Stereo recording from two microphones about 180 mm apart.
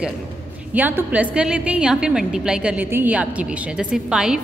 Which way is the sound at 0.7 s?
10° right (ahead or behind).